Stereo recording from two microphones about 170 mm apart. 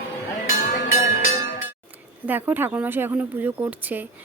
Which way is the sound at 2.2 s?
10° right (ahead or behind).